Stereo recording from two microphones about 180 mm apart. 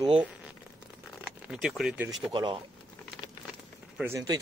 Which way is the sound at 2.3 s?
25° right (ahead or behind).